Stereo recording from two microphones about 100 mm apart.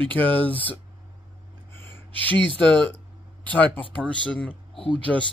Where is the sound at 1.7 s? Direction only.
25° left (ahead or behind).